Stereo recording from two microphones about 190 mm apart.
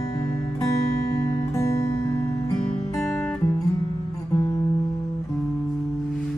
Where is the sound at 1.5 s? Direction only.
15° left (ahead or behind).